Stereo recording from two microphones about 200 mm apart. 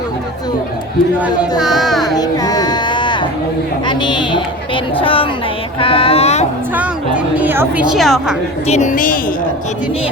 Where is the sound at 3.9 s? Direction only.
25° left (ahead or behind).